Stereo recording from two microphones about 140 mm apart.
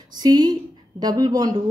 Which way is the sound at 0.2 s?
30° right (ahead or behind).